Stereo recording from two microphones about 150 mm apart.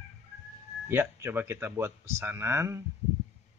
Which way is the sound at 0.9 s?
15° right (ahead or behind).